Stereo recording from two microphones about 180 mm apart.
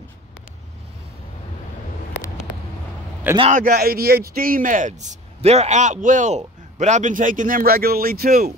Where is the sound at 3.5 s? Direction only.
50° right (ahead or behind).